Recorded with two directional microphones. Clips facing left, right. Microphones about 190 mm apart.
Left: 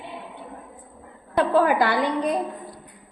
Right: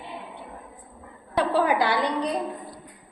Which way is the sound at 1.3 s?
50° left (ahead or behind).